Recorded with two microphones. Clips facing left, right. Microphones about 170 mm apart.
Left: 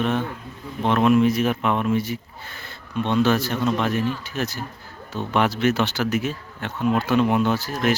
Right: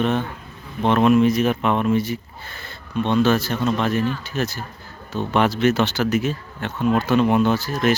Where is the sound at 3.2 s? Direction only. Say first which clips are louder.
Right 1 dB; 15° left (ahead or behind).